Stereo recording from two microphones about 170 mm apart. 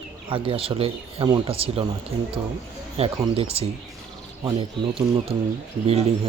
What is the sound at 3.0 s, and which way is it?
A man's voice, 35° right (ahead or behind).